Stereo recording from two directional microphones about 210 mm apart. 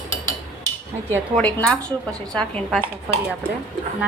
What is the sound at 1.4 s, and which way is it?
A woman's voice, 5° left (ahead or behind).